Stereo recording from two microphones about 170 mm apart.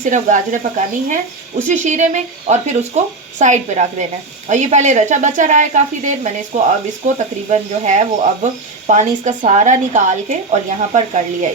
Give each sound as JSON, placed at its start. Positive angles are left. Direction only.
{"t": 0.0, "sound": "a woman's voice", "side_deg": -50}